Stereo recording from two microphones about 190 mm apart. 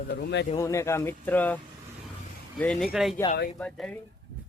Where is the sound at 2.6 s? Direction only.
5° left (ahead or behind).